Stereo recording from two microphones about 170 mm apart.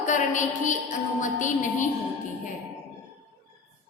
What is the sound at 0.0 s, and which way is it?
A woman's voice, 45° left (ahead or behind).